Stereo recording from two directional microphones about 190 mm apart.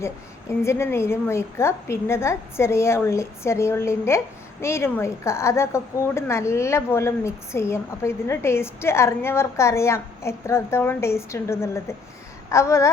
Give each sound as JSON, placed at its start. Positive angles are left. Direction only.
{"t": 0.6, "sound": "a woman's voice", "side_deg": 15}